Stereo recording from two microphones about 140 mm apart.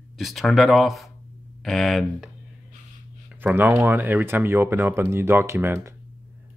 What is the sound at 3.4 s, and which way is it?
Speech, 15° right (ahead or behind).